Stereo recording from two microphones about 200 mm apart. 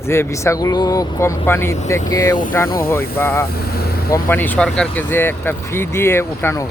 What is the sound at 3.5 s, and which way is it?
Speech, 50° left (ahead or behind).